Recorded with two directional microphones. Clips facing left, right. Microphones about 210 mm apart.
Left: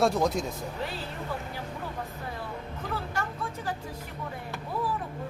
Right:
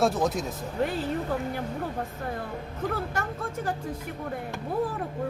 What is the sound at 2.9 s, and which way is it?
Speech, 50° right (ahead or behind).